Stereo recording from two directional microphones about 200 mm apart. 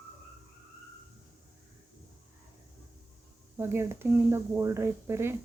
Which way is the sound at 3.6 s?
10° right (ahead or behind).